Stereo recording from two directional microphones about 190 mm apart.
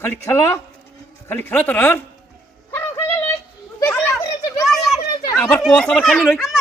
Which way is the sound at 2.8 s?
15° left (ahead or behind).